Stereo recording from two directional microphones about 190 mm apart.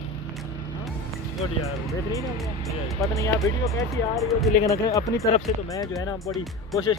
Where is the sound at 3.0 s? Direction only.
15° left (ahead or behind).